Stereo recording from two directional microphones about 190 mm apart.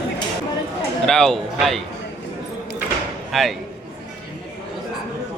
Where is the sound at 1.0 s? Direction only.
Centre (ahead or behind).